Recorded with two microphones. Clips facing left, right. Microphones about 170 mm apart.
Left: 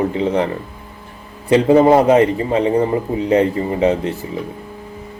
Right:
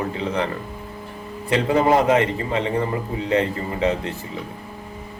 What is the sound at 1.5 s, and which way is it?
Speech, 30° left (ahead or behind).